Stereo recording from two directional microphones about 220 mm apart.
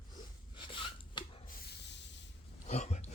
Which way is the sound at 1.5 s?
45° left (ahead or behind).